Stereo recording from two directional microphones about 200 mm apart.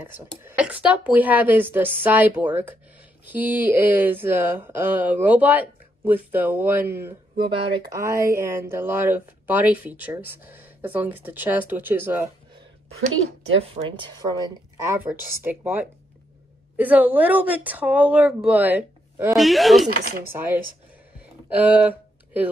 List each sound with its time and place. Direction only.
0.4 s speech: 10° right (ahead or behind)
13.6 s speech: 25° right (ahead or behind)
14.9 s speech: 10° right (ahead or behind)
19.9 s speech: 45° right (ahead or behind)
20.2 s speech: 10° right (ahead or behind)